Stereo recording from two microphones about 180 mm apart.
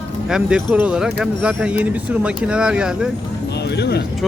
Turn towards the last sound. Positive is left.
turn(degrees=65)  # may be behind; listen again after turning